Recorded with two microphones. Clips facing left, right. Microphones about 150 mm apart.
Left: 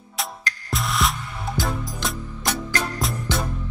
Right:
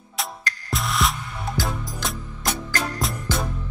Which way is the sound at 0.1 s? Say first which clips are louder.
Even; centre (ahead or behind).